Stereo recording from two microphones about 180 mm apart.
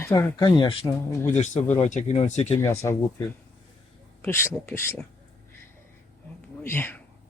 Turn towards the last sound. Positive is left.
turn(degrees=10)  # may be behind; listen again after turning